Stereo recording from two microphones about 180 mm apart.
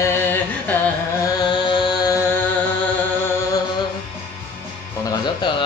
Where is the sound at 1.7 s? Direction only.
25° left (ahead or behind).